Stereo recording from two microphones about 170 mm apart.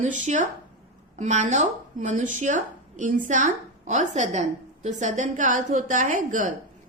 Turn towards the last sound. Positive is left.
turn(degrees=-50)  # may be behind; listen again after turning